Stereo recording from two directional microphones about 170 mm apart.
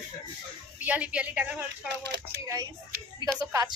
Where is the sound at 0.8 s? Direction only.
10° right (ahead or behind).